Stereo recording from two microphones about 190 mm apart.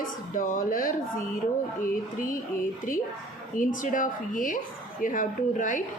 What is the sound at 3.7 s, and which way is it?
Speech, 45° left (ahead or behind).